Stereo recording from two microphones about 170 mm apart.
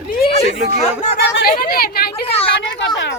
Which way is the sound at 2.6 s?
90° left.